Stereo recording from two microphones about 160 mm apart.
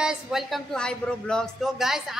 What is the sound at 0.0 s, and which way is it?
A woman's voice, 5° right (ahead or behind).